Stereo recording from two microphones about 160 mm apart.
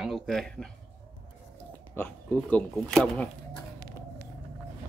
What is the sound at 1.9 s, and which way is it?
Speech, 10° left (ahead or behind).